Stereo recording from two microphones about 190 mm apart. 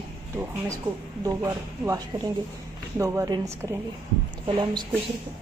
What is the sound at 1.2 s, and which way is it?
Speech, 15° right (ahead or behind).